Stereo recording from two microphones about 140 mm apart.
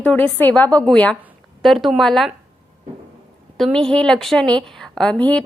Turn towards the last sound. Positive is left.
turn(degrees=10)  # may be behind; listen again after turning